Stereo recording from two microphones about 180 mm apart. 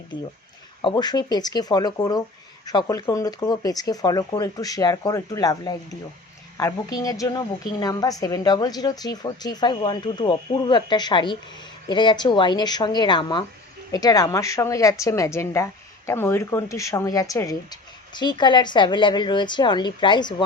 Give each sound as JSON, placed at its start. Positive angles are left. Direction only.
{"t": 0.8, "sound": "a woman's voice", "side_deg": 25}